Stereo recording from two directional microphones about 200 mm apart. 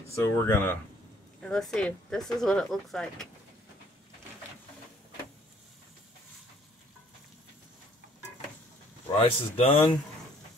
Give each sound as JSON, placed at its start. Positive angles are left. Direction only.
{"t": 0.1, "sound": "speech", "side_deg": 15}
{"t": 9.2, "sound": "speech", "side_deg": 30}